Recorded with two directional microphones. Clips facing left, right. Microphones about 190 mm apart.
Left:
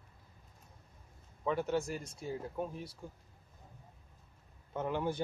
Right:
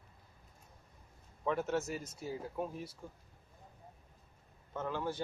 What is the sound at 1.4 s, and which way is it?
Speech, centre (ahead or behind).